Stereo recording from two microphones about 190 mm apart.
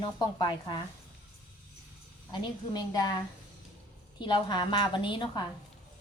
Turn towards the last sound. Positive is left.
turn(degrees=25)  # may be behind; listen again after turning